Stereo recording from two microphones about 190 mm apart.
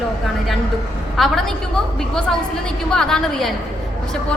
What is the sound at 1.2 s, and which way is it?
Speech, centre (ahead or behind).